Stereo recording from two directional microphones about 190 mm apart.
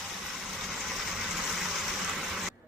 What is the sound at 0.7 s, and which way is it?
Vehicle, centre (ahead or behind).